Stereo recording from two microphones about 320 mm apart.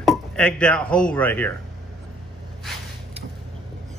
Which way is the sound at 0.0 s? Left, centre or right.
Centre.